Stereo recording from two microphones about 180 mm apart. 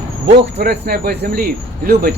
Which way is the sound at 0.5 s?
65° right (ahead or behind).